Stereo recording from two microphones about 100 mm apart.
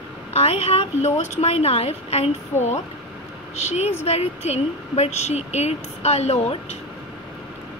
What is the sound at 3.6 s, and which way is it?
A woman's voice, 90° left.